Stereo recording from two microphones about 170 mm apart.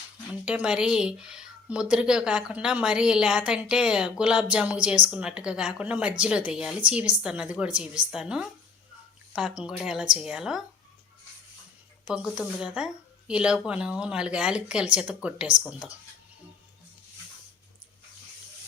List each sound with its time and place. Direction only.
0.4 s speech: 5° right (ahead or behind)
12.0 s speech: 5° right (ahead or behind)